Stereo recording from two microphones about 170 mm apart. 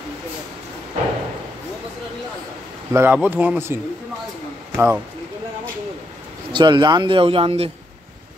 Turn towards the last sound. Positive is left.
turn(degrees=-35)  # may be behind; listen again after turning